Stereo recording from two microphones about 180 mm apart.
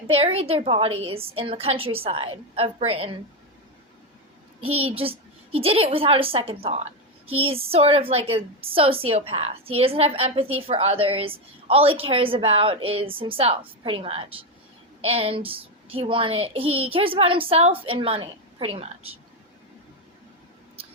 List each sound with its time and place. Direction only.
0.1 s a woman's voice: 35° right (ahead or behind)
4.6 s a woman's voice: 30° right (ahead or behind)
20.8 s a sound: 30° right (ahead or behind)